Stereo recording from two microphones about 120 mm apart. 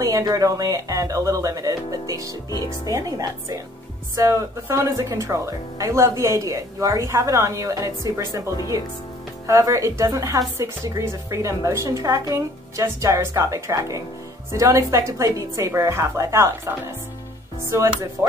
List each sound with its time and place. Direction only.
0.0 s speech: 30° right (ahead or behind)